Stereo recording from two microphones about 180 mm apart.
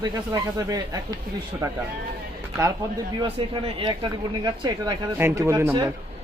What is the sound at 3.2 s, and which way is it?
Speech, 30° right (ahead or behind).